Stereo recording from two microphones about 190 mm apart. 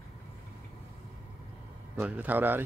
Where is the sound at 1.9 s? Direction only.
5° right (ahead or behind).